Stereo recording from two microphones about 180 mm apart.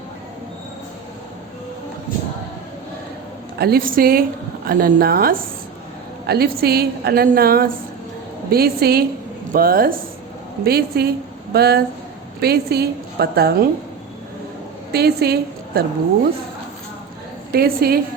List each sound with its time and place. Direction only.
3.6 s a woman's voice: 55° right (ahead or behind)
14.9 s a woman's voice: 60° right (ahead or behind)
17.5 s a woman's voice: 60° right (ahead or behind)